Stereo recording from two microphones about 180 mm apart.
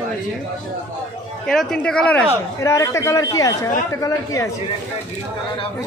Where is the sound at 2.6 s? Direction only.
15° left (ahead or behind).